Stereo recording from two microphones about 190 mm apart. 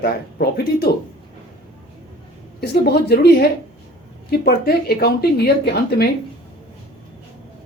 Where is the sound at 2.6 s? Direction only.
55° left (ahead or behind).